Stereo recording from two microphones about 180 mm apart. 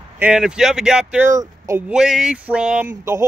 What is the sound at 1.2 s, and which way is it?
Speech, 20° right (ahead or behind).